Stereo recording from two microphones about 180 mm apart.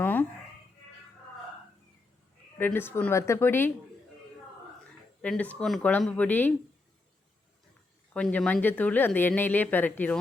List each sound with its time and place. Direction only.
0.0 s a sound: 10° left (ahead or behind)
2.6 s speech: 10° left (ahead or behind)
5.2 s speech: 5° left (ahead or behind)
8.1 s speech: 5° left (ahead or behind)